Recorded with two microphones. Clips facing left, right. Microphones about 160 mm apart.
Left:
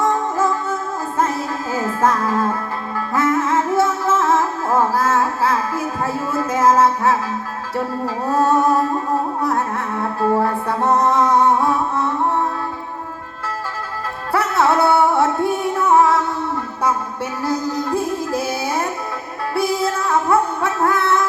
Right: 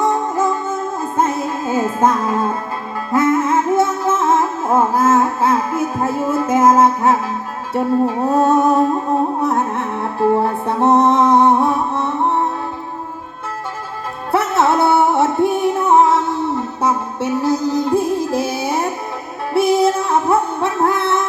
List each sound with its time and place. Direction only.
0.0 s music: 20° right (ahead or behind)
14.3 s music: 25° right (ahead or behind)